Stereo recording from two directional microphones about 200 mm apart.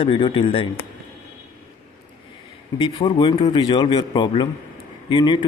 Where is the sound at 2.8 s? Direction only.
20° left (ahead or behind).